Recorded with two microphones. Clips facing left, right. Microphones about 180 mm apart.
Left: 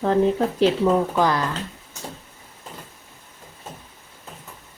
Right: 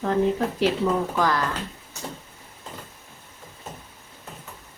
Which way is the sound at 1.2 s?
20° left (ahead or behind).